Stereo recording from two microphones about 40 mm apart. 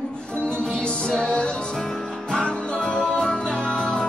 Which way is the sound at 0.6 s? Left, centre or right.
Left.